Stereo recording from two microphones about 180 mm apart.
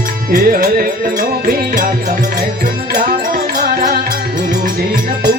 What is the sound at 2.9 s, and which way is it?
Music, 50° right (ahead or behind).